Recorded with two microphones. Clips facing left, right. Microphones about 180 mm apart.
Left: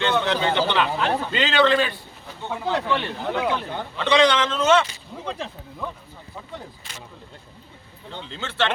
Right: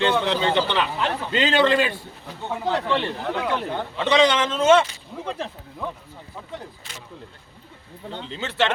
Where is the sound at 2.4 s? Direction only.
5° right (ahead or behind).